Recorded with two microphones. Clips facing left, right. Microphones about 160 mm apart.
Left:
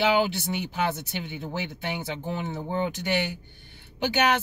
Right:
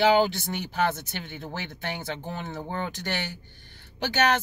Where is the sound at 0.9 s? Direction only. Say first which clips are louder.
Left 3 dB; 10° left (ahead or behind).